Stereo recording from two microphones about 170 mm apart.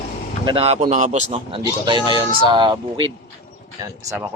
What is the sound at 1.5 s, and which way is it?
Speech, 25° right (ahead or behind).